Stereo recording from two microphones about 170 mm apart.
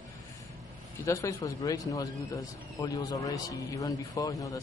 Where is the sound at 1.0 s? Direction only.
20° left (ahead or behind).